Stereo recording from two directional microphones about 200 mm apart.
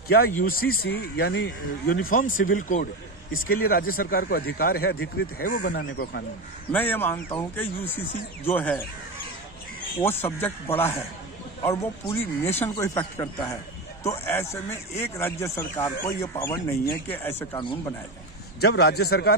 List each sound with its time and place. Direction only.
0.4 s speech: 45° left (ahead or behind)
6.7 s speech: 10° left (ahead or behind)
9.9 s speech: 10° left (ahead or behind)
18.6 s a man's voice: 55° left (ahead or behind)